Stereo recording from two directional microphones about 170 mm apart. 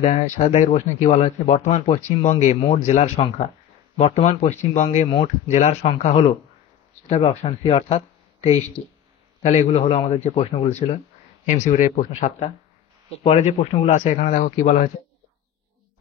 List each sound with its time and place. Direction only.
0.0 s speech: 45° left (ahead or behind)